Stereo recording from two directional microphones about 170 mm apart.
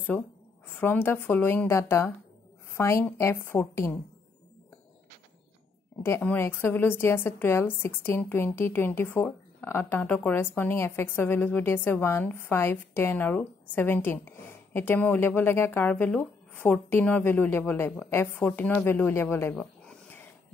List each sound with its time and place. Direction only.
0.7 s a woman's voice: 10° left (ahead or behind)
6.0 s a woman's voice: 15° left (ahead or behind)